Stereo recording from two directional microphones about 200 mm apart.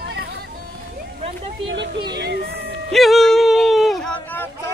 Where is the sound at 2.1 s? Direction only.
55° right (ahead or behind).